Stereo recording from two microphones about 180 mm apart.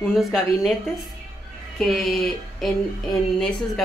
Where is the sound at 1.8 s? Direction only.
Centre (ahead or behind).